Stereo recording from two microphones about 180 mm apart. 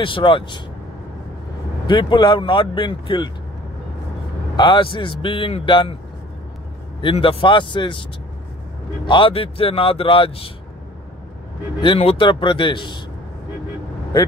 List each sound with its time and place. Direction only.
0.0 s a man's voice: 30° left (ahead or behind)
1.9 s a man's voice: 25° left (ahead or behind)
4.6 s a man's voice: 30° left (ahead or behind)
7.0 s a man's voice: 30° left (ahead or behind)
9.0 s speech: 25° left (ahead or behind)
11.8 s a man's voice: 30° left (ahead or behind)